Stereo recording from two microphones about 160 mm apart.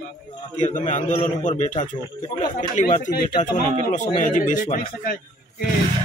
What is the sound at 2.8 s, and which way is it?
A man's voice, 45° left (ahead or behind).